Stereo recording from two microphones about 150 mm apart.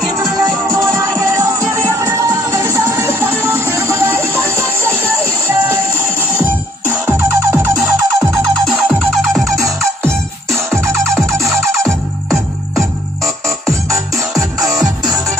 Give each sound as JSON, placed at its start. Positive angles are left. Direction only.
{"t": 0.7, "sound": "music", "side_deg": -20}
{"t": 8.3, "sound": "music", "side_deg": 5}
{"t": 13.7, "sound": "music", "side_deg": 0}